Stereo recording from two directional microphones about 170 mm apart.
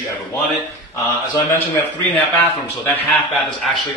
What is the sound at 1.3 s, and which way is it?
Speech, 20° left (ahead or behind).